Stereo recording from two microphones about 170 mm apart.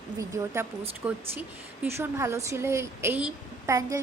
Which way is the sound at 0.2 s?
15° right (ahead or behind).